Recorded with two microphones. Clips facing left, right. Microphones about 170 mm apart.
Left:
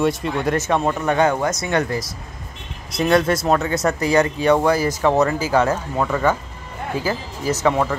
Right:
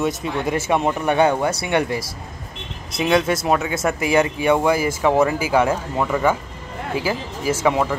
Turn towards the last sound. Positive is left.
turn(degrees=-10)  # may be behind; listen again after turning